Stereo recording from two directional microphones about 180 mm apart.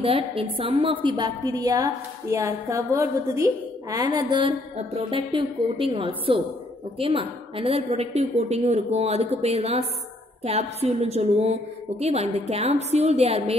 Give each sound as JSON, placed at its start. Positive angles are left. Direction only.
{"t": 0.0, "sound": "a woman's voice", "side_deg": -30}